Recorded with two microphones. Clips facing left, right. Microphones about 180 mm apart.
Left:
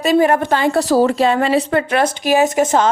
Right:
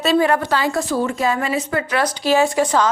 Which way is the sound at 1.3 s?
65° left (ahead or behind).